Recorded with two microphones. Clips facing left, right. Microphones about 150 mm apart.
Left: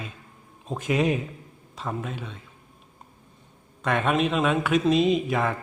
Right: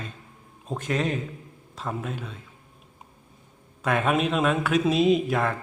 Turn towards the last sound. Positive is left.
turn(degrees=0)  # may be behind; listen again after turning